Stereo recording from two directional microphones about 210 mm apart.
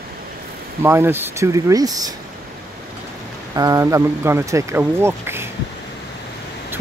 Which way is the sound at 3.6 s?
15° right (ahead or behind).